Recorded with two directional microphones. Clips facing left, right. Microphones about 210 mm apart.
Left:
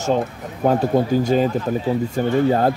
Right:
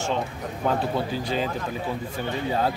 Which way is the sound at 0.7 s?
45° left (ahead or behind).